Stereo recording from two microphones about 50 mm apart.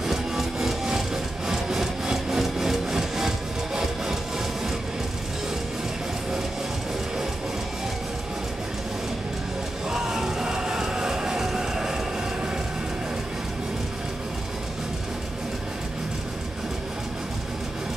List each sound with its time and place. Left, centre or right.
0.0 s music: centre
9.8 s music: centre